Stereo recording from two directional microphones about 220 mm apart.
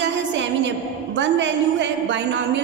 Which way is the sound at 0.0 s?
55° right (ahead or behind).